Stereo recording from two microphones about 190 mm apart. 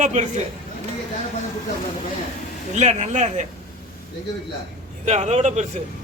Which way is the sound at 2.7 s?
35° right (ahead or behind).